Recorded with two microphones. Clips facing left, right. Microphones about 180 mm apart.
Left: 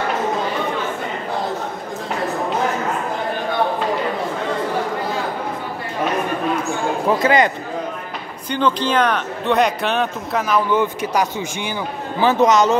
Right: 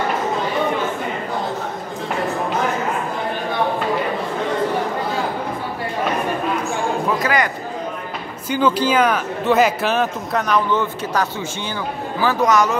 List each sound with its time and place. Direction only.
7.1 s speech: 25° left (ahead or behind)
8.5 s speech: 5° right (ahead or behind)
10.8 s a man's voice: 15° left (ahead or behind)